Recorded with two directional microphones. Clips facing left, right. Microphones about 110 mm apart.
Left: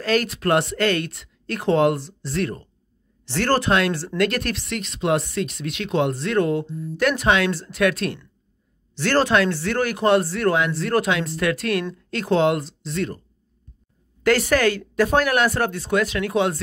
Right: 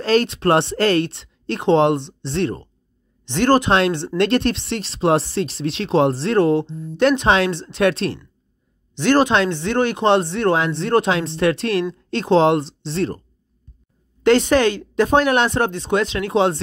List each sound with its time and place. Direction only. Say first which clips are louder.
0.0 s speech: right 4 dB; 30° right (ahead or behind)
8.9 s speech: right 3 dB; 20° right (ahead or behind)
14.2 s speech: right 4 dB; 25° right (ahead or behind)